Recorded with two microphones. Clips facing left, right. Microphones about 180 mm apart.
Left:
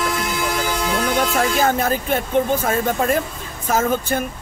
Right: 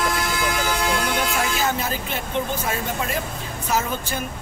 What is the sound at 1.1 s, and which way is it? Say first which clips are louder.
Speech: left 5 dB; 50° left (ahead or behind).